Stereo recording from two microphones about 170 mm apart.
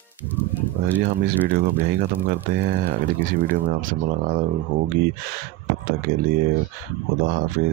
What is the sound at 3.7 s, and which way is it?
Speech, 55° right (ahead or behind).